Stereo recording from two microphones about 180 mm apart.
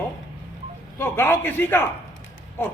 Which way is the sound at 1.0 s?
10° left (ahead or behind).